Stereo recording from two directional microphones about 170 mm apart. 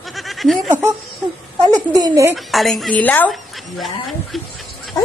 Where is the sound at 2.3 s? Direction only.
Centre (ahead or behind).